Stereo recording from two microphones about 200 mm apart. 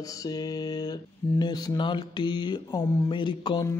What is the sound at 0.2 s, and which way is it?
Music, 20° left (ahead or behind).